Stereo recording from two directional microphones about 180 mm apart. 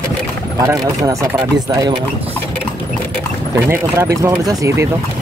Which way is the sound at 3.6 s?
15° right (ahead or behind).